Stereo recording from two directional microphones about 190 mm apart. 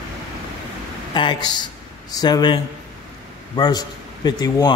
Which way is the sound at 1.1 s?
25° left (ahead or behind).